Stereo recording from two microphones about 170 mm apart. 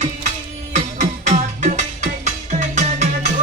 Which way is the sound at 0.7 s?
45° right (ahead or behind).